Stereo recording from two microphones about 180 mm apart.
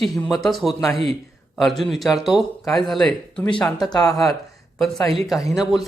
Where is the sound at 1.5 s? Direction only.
Centre (ahead or behind).